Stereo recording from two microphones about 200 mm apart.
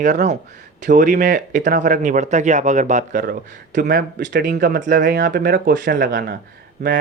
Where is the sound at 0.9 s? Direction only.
40° right (ahead or behind).